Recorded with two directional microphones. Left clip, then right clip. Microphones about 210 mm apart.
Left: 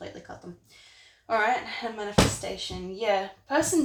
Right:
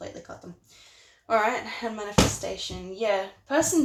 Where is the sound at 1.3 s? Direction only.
35° right (ahead or behind).